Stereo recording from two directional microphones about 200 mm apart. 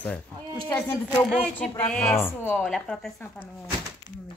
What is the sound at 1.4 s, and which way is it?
A woman's voice, 5° left (ahead or behind).